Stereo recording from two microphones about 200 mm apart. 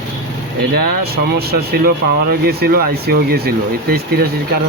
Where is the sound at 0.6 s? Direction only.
50° right (ahead or behind).